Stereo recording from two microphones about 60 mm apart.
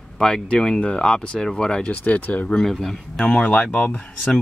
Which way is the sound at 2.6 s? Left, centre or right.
Centre.